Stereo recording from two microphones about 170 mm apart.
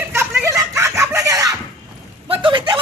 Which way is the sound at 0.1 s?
15° right (ahead or behind).